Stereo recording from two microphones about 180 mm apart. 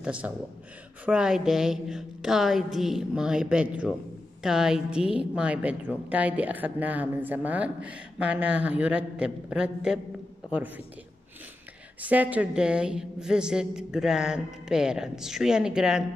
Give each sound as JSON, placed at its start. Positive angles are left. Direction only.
{"t": 0.0, "sound": "a man's voice", "side_deg": -5}
{"t": 12.0, "sound": "a woman's voice", "side_deg": -10}